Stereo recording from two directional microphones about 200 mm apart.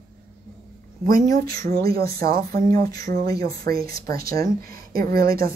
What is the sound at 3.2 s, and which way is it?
Speech, 20° left (ahead or behind).